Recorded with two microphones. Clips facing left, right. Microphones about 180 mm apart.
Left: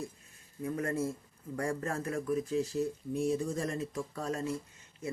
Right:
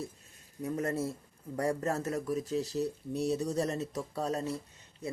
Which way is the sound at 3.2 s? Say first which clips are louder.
Right 2 dB; 40° right (ahead or behind).